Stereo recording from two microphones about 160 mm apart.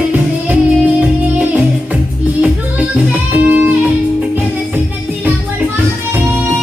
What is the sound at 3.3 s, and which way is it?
Music, 10° right (ahead or behind).